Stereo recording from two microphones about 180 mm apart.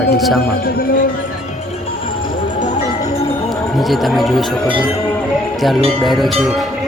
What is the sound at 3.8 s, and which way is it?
Speech, centre (ahead or behind).